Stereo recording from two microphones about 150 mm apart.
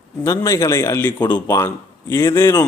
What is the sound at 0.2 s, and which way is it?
A man's voice, 20° left (ahead or behind).